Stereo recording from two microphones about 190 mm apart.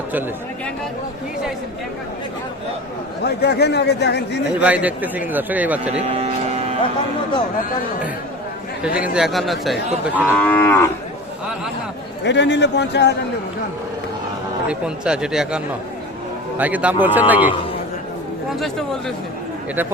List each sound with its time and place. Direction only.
3.2 s speech: 60° left (ahead or behind)
4.6 s a man's voice: 5° right (ahead or behind)
5.9 s cattle: 35° right (ahead or behind)
9.1 s a man's voice: centre (ahead or behind)
10.3 s moo: 10° left (ahead or behind)
12.2 s speech: 65° left (ahead or behind)
14.7 s a man's voice: 5° right (ahead or behind)
18.6 s speech: centre (ahead or behind)